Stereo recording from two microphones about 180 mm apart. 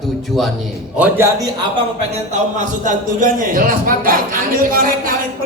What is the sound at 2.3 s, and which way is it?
A man's voice, 45° right (ahead or behind).